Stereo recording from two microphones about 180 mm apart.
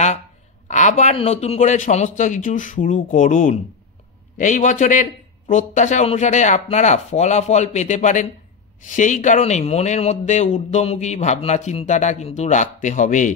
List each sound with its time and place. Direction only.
0.7 s a man's voice: 40° left (ahead or behind)